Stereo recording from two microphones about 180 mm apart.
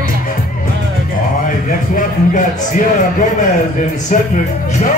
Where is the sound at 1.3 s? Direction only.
50° left (ahead or behind).